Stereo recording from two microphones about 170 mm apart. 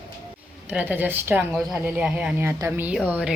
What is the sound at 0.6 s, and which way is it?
A woman's voice, 10° right (ahead or behind).